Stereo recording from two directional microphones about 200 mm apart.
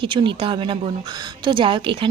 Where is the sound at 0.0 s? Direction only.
25° right (ahead or behind).